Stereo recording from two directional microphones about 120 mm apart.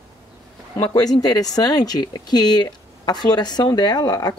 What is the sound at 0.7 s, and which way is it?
Speech, 35° left (ahead or behind).